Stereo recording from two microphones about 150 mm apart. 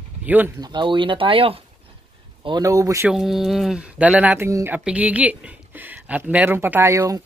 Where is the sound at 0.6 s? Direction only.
30° right (ahead or behind).